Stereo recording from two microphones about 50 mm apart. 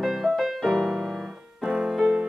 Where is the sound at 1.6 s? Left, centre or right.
Centre.